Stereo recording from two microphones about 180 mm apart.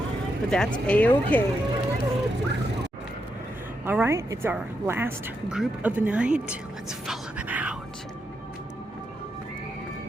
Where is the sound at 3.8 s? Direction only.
10° right (ahead or behind).